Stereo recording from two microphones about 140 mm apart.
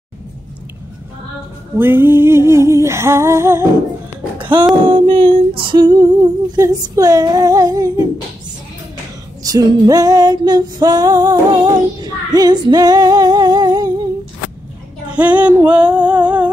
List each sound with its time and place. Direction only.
1.8 s female singing: 15° right (ahead or behind)
4.4 s music: 35° right (ahead or behind)
4.8 s female singing: 35° right (ahead or behind)
9.4 s female singing: 25° right (ahead or behind)
15.1 s music: 10° right (ahead or behind)